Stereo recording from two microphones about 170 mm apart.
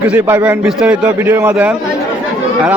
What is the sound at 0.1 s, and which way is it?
A man's voice, 10° right (ahead or behind).